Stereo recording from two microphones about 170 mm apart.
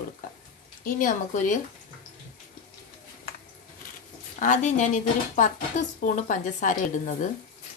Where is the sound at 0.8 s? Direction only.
50° left (ahead or behind).